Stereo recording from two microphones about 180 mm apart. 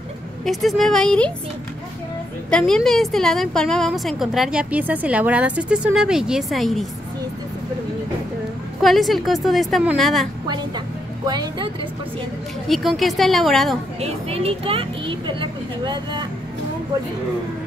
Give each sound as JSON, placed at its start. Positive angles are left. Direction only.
{"t": 0.5, "sound": "a woman's voice", "side_deg": 0}
{"t": 2.5, "sound": "a woman's voice", "side_deg": 0}
{"t": 8.8, "sound": "a woman's voice", "side_deg": 0}
{"t": 11.2, "sound": "speech", "side_deg": -25}
{"t": 12.6, "sound": "a woman's voice", "side_deg": 0}
{"t": 14.0, "sound": "speech", "side_deg": -35}